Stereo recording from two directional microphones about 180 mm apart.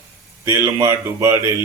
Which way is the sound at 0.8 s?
20° right (ahead or behind).